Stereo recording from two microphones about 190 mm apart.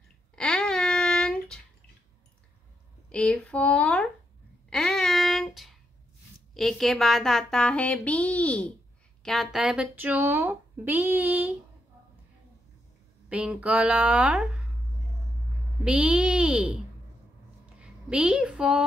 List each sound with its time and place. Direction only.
0.4 s babbling: 5° left (ahead or behind)
3.1 s speech: 5° left (ahead or behind)
4.6 s a sound: 5° left (ahead or behind)
6.5 s speech: centre (ahead or behind)
13.3 s speech: 5° right (ahead or behind)
15.8 s a woman's voice: 5° right (ahead or behind)